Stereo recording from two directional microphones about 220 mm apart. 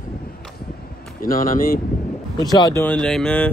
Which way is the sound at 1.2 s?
40° left (ahead or behind).